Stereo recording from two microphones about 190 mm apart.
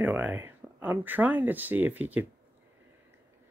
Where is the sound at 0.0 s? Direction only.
10° right (ahead or behind).